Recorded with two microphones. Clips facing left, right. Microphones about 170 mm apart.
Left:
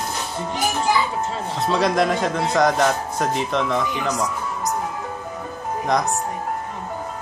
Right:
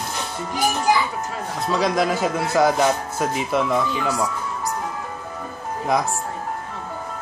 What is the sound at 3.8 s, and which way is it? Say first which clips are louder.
Speech: right 1 dB; 20° left (ahead or behind).